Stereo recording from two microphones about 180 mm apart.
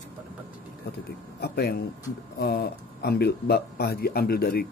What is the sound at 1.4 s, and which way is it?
Speech, 60° left (ahead or behind).